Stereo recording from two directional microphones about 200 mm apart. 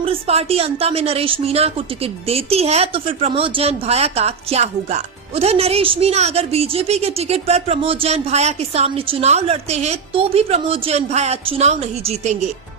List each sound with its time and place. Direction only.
0.0 s a woman's voice: 30° right (ahead or behind)